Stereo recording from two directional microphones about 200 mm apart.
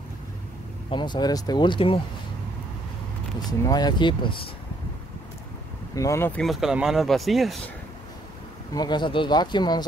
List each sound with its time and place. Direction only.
0.8 s speech: 20° left (ahead or behind)
3.3 s speech: 20° left (ahead or behind)
5.9 s speech: 15° left (ahead or behind)
8.7 s speech: 20° left (ahead or behind)